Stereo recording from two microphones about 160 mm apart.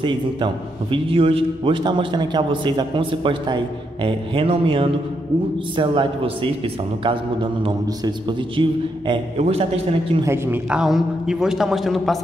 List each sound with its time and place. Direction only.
0.0 s a man's voice: 30° right (ahead or behind)
10.2 s a man's voice: 15° right (ahead or behind)